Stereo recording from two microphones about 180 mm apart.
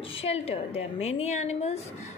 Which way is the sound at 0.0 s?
30° left (ahead or behind).